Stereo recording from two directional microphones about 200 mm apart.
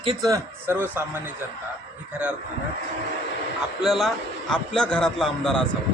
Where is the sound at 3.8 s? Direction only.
Centre (ahead or behind).